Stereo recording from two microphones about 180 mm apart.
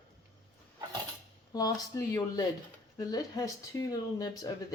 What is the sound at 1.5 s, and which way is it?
Speech, 20° left (ahead or behind).